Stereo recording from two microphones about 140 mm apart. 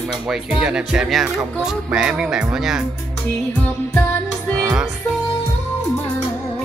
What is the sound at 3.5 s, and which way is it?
Music, 10° left (ahead or behind).